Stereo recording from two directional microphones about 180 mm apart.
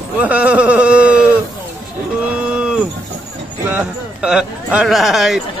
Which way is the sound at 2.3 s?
5° right (ahead or behind).